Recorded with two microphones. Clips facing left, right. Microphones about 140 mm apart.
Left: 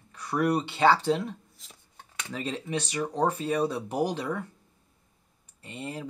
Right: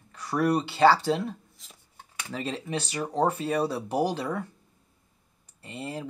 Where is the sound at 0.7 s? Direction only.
5° right (ahead or behind).